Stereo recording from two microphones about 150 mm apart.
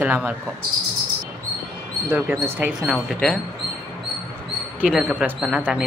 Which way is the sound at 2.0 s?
10° right (ahead or behind).